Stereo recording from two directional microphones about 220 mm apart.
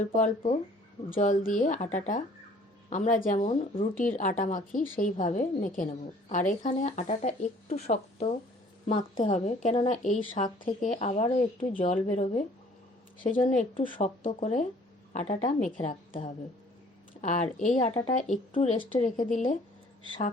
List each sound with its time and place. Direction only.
0.1 s a woman's voice: 35° left (ahead or behind)